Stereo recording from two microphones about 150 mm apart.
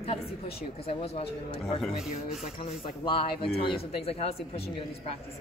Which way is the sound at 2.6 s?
35° left (ahead or behind).